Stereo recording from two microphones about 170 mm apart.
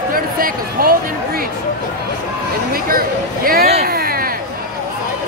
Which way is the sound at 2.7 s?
60° right (ahead or behind).